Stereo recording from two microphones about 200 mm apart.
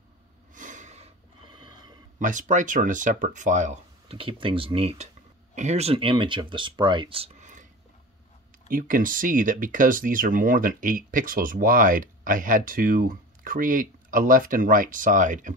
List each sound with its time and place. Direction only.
0.6 s snort: 40° right (ahead or behind); by 2.0 s 20° right (ahead or behind)
2.1 s speech: 40° right (ahead or behind)
8.6 s speech: 45° right (ahead or behind)